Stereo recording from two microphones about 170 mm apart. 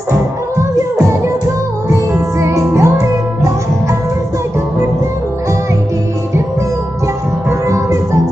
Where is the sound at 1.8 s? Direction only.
15° right (ahead or behind).